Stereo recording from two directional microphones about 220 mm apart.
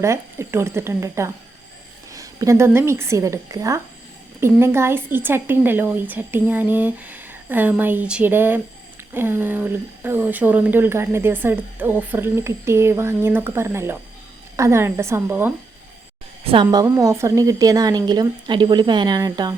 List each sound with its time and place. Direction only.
0.0 s speech: 10° right (ahead or behind)
16.4 s speech: 25° right (ahead or behind)